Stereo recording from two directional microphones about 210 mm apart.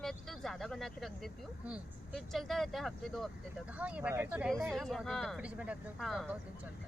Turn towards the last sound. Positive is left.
turn(degrees=0)  # may be behind; listen again after turning